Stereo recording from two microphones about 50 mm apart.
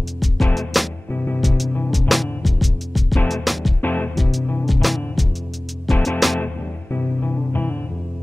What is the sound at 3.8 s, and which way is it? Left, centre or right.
Music, left.